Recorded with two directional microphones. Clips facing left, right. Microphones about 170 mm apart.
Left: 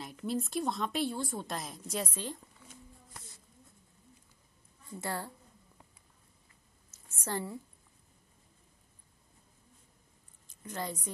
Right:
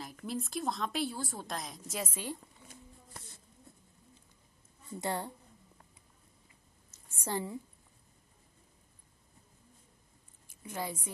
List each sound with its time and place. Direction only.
0.0 s a woman's voice: centre (ahead or behind)
5.0 s speech: 20° right (ahead or behind)
7.1 s a sound: 15° right (ahead or behind)
10.6 s a woman's voice: 10° right (ahead or behind)